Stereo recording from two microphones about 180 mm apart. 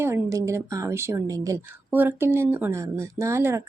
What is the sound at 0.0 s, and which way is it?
A woman's voice, 15° right (ahead or behind).